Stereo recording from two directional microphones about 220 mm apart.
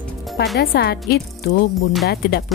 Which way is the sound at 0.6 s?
45° left (ahead or behind).